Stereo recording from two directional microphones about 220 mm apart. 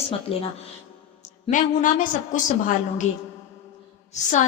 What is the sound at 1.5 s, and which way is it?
A woman's voice, 35° left (ahead or behind).